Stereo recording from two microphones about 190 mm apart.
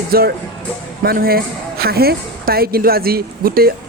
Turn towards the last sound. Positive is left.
turn(degrees=-50)  # may be behind; listen again after turning